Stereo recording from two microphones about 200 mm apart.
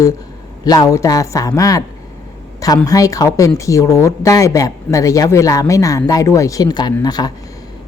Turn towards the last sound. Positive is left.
turn(degrees=20)  # may be behind; listen again after turning